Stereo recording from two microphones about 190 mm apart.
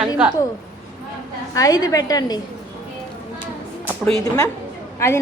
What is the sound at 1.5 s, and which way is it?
Speech, 20° left (ahead or behind).